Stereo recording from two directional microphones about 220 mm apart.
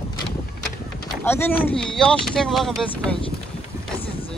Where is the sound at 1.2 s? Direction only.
10° left (ahead or behind).